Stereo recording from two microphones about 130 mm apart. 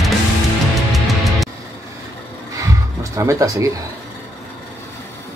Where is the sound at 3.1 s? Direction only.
25° right (ahead or behind).